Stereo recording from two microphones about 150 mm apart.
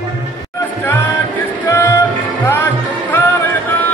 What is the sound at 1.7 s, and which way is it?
Music, 15° left (ahead or behind).